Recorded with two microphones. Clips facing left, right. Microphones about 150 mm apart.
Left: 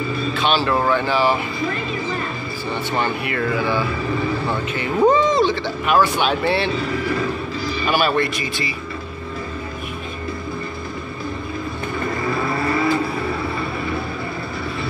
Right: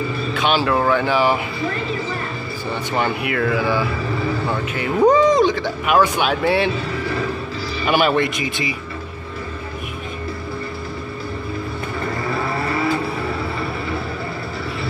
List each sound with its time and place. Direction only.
0.4 s speech: 15° right (ahead or behind)
3.0 s speech: 5° right (ahead or behind)
7.9 s speech: 15° right (ahead or behind)